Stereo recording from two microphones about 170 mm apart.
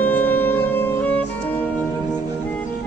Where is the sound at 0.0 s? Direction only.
10° left (ahead or behind).